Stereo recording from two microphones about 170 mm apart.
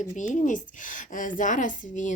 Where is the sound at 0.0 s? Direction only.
50° left (ahead or behind).